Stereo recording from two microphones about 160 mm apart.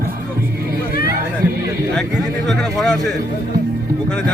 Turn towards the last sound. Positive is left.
turn(degrees=0)  # may be behind; listen again after turning